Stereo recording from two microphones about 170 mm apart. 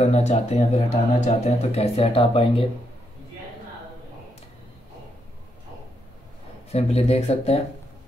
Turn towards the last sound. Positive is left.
turn(degrees=40)  # may be behind; listen again after turning